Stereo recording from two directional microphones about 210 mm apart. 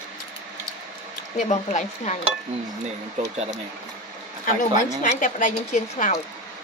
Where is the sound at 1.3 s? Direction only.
35° left (ahead or behind).